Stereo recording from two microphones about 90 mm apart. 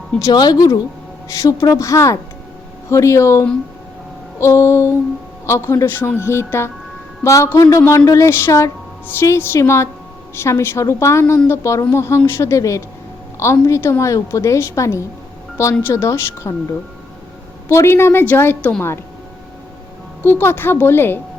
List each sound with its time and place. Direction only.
0.2 s a woman's voice: 45° left (ahead or behind)
17.7 s a woman's voice: 30° left (ahead or behind)
20.2 s a woman's voice: 25° left (ahead or behind)